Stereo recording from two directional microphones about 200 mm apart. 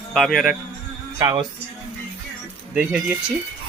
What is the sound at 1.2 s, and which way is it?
Speech, 15° right (ahead or behind).